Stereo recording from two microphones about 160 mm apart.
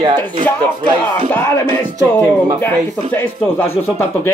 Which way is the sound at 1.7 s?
20° right (ahead or behind).